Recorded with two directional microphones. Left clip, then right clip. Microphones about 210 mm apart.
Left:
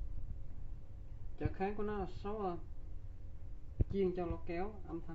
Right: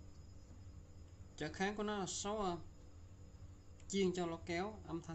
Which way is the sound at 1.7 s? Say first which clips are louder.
Left 1 dB; 40° right (ahead or behind).